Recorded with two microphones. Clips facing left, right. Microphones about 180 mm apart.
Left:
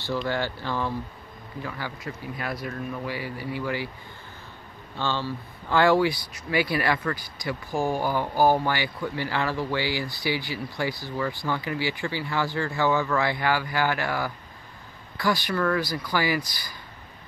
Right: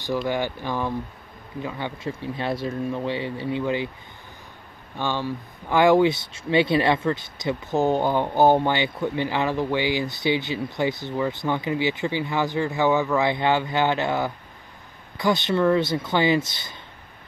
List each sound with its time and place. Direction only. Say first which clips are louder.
0.0 s speech: right 3 dB; 15° right (ahead or behind)
4.9 s speech: right 2 dB; 15° right (ahead or behind)